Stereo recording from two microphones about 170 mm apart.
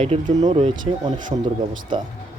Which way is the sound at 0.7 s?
25° right (ahead or behind).